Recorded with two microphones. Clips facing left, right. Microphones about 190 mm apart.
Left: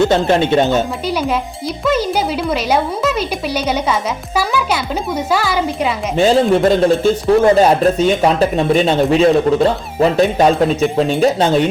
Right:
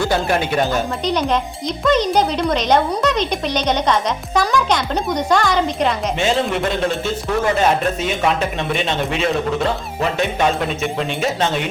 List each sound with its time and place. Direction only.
0.0 s speech: 25° left (ahead or behind)
1.0 s speech: 5° left (ahead or behind)
6.5 s speech: 35° left (ahead or behind)